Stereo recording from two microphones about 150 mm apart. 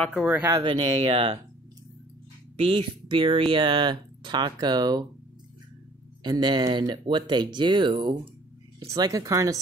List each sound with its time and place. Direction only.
0.0 s speech: 5° left (ahead or behind)
0.3 s speech: 15° right (ahead or behind)
0.7 s speech: 35° right (ahead or behind)
2.5 s speech: 35° right (ahead or behind)
6.2 s speech: 30° right (ahead or behind)